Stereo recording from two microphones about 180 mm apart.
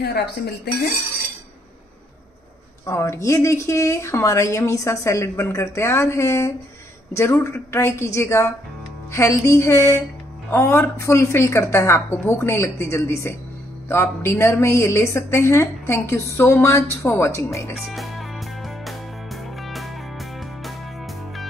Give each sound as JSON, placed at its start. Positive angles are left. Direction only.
{"t": 0.0, "sound": "speech", "side_deg": 65}
{"t": 2.8, "sound": "speech", "side_deg": 15}
{"t": 17.7, "sound": "music", "side_deg": 0}